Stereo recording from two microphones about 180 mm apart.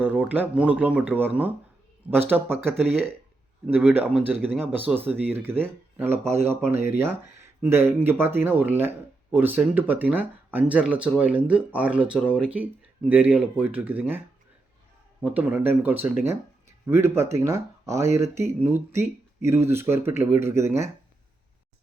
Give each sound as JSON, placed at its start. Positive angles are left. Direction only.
{"t": 0.0, "sound": "speech", "side_deg": -10}
{"t": 15.2, "sound": "speech", "side_deg": -10}